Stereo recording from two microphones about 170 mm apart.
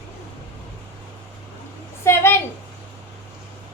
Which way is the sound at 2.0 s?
15° left (ahead or behind).